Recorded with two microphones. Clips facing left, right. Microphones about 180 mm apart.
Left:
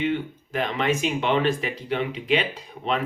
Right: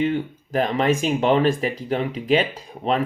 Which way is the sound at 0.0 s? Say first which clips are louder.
Right 3 dB; 40° right (ahead or behind).